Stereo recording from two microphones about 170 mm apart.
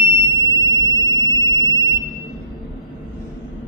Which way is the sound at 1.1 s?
20° left (ahead or behind).